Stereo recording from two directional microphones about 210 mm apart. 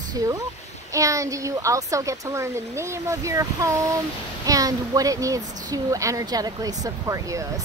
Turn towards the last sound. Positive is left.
turn(degrees=-15)  # may be behind; listen again after turning